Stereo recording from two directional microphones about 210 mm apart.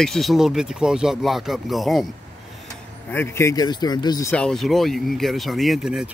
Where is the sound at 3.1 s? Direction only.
10° left (ahead or behind).